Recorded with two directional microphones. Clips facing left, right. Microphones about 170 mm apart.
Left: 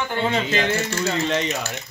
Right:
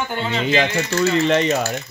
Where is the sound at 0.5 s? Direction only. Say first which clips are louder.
Right 3 dB; 65° right (ahead or behind).